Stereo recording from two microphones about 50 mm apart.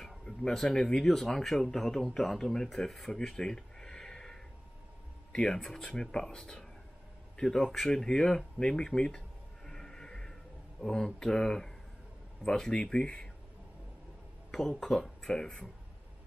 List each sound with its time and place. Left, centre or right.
0.2 s speech: centre
9.7 s music: centre
10.8 s speech: centre
14.5 s speech: centre